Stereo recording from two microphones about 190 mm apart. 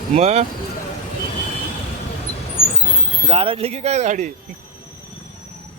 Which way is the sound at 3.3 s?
30° right (ahead or behind).